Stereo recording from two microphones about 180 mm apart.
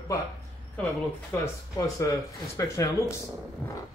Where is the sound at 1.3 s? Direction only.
10° left (ahead or behind).